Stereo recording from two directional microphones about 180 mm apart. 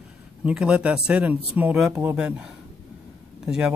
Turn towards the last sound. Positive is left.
turn(degrees=-5)  # may be behind; listen again after turning